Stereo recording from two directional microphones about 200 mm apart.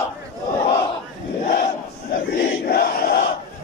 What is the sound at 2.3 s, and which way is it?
Crowd, 50° left (ahead or behind).